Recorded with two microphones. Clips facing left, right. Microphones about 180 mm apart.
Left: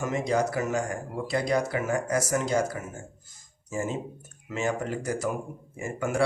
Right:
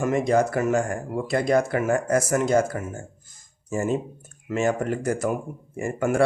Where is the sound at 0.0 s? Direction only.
55° right (ahead or behind).